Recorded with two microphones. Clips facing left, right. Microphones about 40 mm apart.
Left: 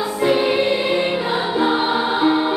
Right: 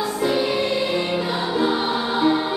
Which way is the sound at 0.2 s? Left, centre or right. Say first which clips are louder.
Left 5 dB; left.